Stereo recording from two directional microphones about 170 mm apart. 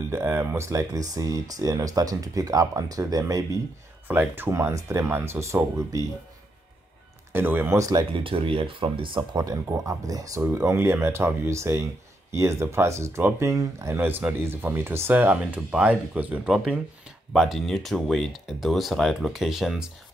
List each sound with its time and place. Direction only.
0.1 s speech: 15° right (ahead or behind)
7.3 s speech: 10° right (ahead or behind)
8.1 s speech: 30° right (ahead or behind); by 19.9 s centre (ahead or behind)